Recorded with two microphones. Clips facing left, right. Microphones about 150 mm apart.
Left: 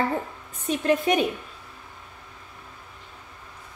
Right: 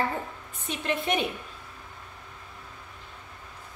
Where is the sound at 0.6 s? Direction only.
45° left (ahead or behind).